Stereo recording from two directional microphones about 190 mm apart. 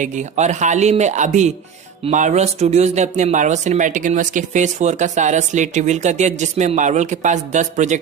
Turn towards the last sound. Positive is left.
turn(degrees=-40)  # may be behind; listen again after turning